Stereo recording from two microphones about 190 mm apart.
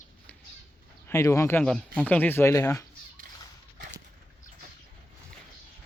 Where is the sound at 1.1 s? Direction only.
15° left (ahead or behind).